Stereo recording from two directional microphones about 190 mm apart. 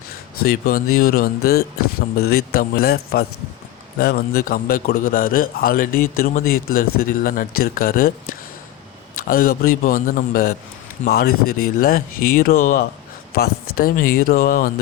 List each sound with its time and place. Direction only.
0.4 s a man's voice: 50° left (ahead or behind)